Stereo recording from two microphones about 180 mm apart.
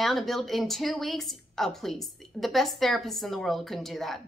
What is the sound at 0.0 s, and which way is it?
A woman's voice, centre (ahead or behind).